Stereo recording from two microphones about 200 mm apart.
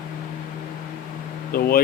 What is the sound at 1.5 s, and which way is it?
Speech, 50° left (ahead or behind).